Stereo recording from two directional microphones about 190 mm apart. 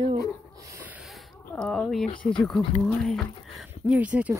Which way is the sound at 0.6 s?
10° right (ahead or behind).